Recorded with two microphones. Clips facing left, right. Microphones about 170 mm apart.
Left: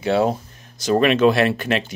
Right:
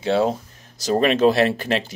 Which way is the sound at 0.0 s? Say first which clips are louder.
Left 1 dB; 25° right (ahead or behind).